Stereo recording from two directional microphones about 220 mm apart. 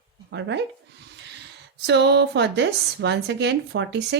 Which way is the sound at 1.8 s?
50° right (ahead or behind).